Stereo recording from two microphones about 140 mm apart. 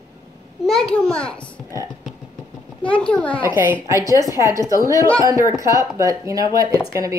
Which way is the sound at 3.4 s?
15° right (ahead or behind).